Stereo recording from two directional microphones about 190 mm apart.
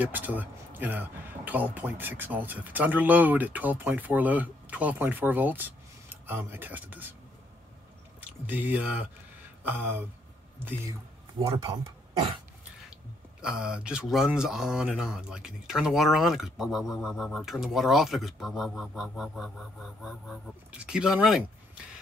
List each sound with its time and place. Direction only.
0.0 s speech: 10° right (ahead or behind)
8.2 s speech: 10° right (ahead or behind)
9.6 s a sound: 10° right (ahead or behind)
11.3 s speech: 25° right (ahead or behind)
13.4 s speech: 5° right (ahead or behind)